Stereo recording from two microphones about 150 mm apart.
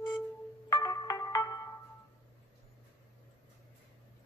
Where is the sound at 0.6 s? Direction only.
25° left (ahead or behind).